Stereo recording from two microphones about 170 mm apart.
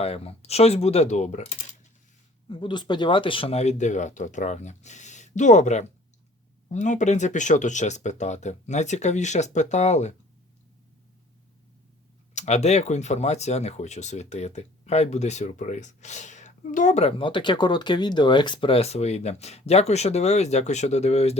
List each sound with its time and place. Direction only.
0.0 s speech: 35° left (ahead or behind)
2.5 s speech: 30° left (ahead or behind)
12.3 s speech: 45° left (ahead or behind)